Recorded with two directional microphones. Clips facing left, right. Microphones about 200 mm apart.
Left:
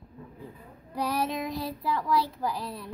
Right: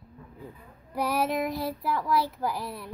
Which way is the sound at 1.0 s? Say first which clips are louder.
Right 3 dB; 10° right (ahead or behind).